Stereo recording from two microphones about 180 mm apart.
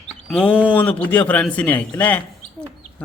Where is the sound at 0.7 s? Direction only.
10° left (ahead or behind).